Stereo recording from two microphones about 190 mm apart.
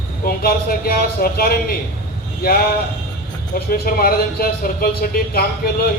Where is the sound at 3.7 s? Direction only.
50° left (ahead or behind).